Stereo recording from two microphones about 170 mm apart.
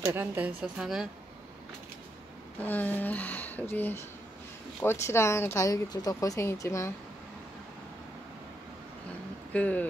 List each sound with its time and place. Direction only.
0.0 s a woman's voice: 15° right (ahead or behind)
2.6 s speech: 10° left (ahead or behind)
9.5 s speech: 10° left (ahead or behind)